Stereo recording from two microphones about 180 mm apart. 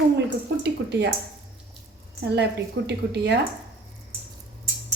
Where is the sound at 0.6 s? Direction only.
70° right (ahead or behind).